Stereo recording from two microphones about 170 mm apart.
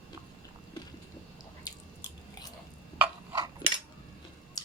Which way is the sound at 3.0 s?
25° right (ahead or behind).